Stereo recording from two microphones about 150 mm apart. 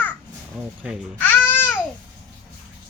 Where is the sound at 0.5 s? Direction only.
10° right (ahead or behind).